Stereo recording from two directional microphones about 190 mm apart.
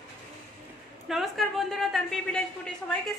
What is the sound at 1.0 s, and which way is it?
A man's voice, centre (ahead or behind).